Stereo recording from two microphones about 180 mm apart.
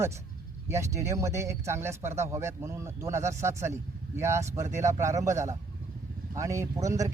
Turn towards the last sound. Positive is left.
turn(degrees=-20)  # may be behind; listen again after turning